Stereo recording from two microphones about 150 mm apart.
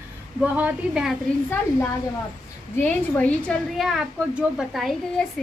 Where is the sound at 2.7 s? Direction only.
10° left (ahead or behind).